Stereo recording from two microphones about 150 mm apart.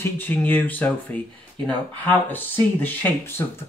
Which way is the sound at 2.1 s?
10° left (ahead or behind).